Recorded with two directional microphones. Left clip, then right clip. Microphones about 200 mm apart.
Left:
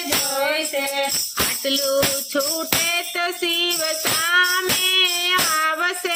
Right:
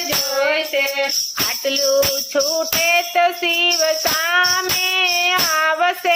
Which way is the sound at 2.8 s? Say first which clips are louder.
Right 7 dB; 50° left (ahead or behind).